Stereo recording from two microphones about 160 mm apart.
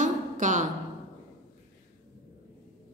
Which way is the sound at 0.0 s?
50° right (ahead or behind).